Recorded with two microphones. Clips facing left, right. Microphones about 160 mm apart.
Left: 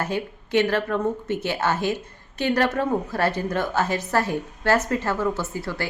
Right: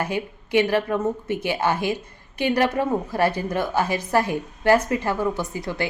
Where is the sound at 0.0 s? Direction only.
15° right (ahead or behind).